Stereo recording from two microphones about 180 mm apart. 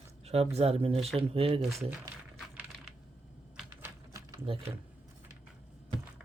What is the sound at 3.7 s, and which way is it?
Typewriter, 15° right (ahead or behind).